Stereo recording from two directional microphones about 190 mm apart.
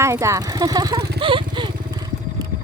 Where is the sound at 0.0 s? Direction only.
15° right (ahead or behind).